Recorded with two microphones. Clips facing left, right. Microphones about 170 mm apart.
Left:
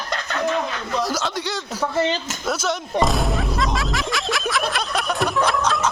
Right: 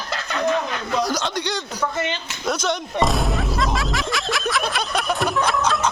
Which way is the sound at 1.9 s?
35° left (ahead or behind).